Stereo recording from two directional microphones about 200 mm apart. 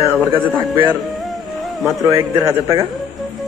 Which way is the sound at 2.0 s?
15° right (ahead or behind).